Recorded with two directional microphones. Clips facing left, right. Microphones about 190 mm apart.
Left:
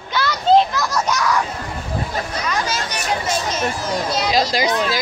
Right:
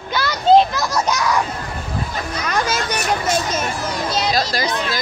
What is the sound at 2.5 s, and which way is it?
Speech, 55° right (ahead or behind).